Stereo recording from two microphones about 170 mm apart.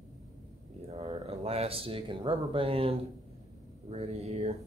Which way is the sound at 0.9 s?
40° right (ahead or behind).